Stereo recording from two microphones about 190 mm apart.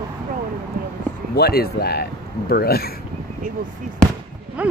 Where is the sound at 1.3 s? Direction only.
55° left (ahead or behind).